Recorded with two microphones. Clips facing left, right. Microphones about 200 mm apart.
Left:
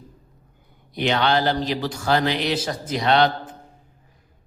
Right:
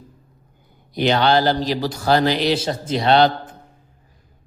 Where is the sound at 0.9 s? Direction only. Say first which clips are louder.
Right 4 dB; 35° right (ahead or behind).